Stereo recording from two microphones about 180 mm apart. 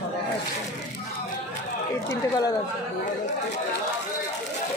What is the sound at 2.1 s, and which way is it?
Speech, 20° left (ahead or behind).